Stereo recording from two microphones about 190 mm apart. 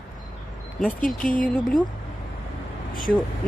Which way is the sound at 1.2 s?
45° left (ahead or behind).